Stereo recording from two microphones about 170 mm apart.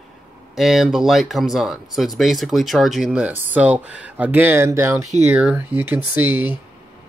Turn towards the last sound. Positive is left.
turn(degrees=-10)  # may be behind; listen again after turning